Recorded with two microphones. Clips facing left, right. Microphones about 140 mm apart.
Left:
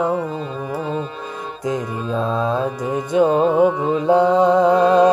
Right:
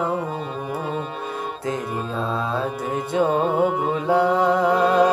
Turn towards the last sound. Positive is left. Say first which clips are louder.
# left 4 dB
turn(degrees=20)  # may be behind; listen again after turning